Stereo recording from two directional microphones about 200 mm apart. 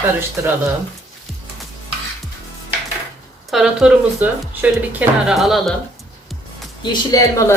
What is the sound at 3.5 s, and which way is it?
Speech, 5° right (ahead or behind).